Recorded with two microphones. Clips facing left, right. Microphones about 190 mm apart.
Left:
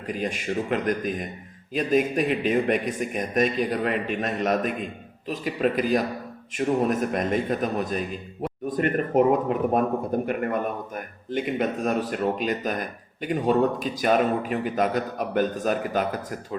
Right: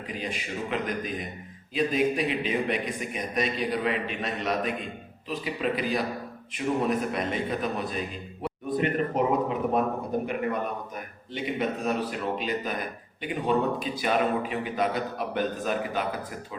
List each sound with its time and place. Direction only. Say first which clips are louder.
0.1 s speech: left 7 dB; 45° left (ahead or behind)
11.3 s speech: left 4 dB; 45° left (ahead or behind)